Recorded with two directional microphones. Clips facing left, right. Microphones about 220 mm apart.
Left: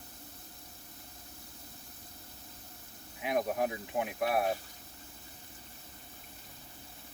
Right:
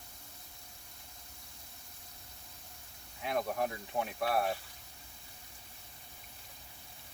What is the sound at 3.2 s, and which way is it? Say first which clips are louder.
Speech: left 3 dB; 15° left (ahead or behind).